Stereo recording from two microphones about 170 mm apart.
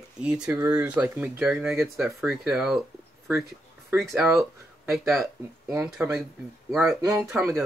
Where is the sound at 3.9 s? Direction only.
15° right (ahead or behind).